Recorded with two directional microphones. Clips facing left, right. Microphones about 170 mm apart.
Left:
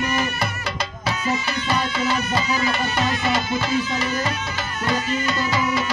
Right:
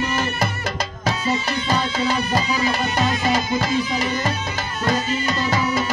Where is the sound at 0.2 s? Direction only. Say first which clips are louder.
Right 2 dB; 40° right (ahead or behind).